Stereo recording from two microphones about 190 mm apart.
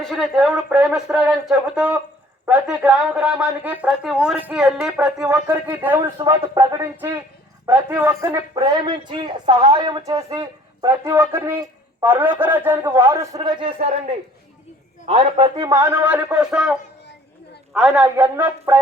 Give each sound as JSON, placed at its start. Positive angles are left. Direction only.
{"t": 0.0, "sound": "a man's voice", "side_deg": 0}
{"t": 17.7, "sound": "a man's voice", "side_deg": -5}